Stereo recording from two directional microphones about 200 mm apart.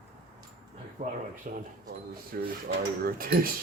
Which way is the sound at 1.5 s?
40° right (ahead or behind).